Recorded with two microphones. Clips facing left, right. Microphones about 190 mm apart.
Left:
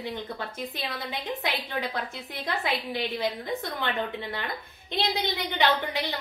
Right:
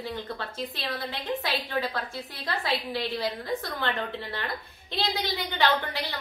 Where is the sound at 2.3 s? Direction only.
20° left (ahead or behind).